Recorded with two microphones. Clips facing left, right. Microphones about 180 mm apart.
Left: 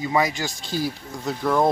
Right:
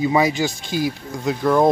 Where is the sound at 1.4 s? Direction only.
Centre (ahead or behind).